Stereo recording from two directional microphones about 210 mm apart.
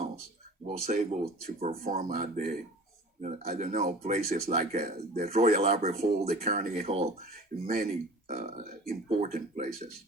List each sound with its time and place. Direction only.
0.6 s speech: 30° right (ahead or behind)